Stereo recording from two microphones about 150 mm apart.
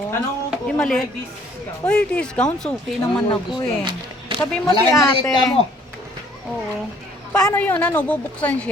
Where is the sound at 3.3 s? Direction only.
30° left (ahead or behind).